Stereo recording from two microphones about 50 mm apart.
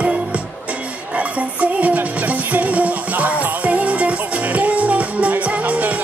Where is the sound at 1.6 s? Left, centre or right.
Right.